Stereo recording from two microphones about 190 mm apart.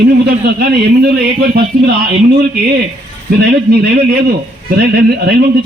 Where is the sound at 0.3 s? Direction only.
55° right (ahead or behind).